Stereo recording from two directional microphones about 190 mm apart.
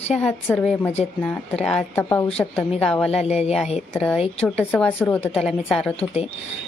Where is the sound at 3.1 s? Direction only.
35° left (ahead or behind).